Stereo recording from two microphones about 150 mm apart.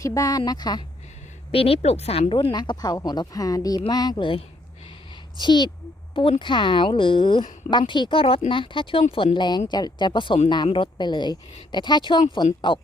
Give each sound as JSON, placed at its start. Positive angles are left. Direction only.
{"t": 0.0, "sound": "a woman's voice", "side_deg": 20}
{"t": 1.5, "sound": "a woman's voice", "side_deg": 40}